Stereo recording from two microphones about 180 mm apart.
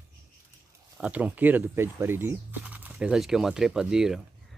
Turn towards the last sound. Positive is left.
turn(degrees=-5)  # may be behind; listen again after turning